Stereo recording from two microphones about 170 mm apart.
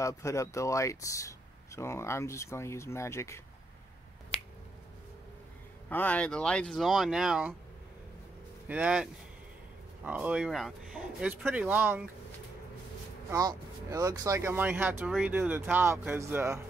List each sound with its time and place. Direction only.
0.0 s speech: 15° left (ahead or behind)
5.9 s speech: 10° left (ahead or behind)
8.6 s speech: 10° right (ahead or behind)
13.3 s speech: 20° right (ahead or behind)